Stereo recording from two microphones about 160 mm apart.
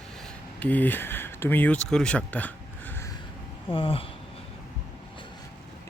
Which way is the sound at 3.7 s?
35° left (ahead or behind).